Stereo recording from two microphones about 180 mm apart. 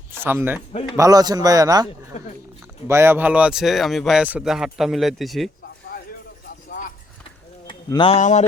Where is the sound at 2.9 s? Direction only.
15° right (ahead or behind).